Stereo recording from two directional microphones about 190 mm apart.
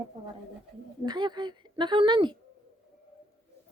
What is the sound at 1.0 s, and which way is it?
Speech, 20° right (ahead or behind).